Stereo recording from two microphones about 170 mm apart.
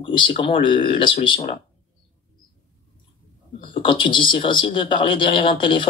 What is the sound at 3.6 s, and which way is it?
Speech, 30° left (ahead or behind).